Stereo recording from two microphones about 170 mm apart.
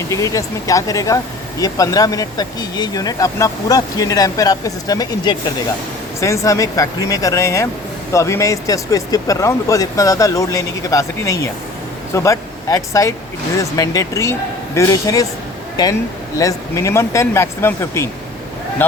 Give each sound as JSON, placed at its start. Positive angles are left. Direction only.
{"t": 0.1, "sound": "speech", "side_deg": 20}